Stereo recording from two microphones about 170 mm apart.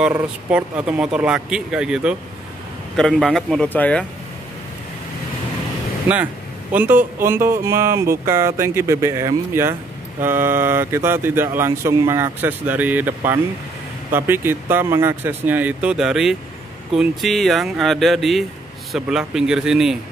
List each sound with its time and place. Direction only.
0.0 s speech: 5° right (ahead or behind); by 4.0 s 10° left (ahead or behind)
6.7 s speech: 10° right (ahead or behind)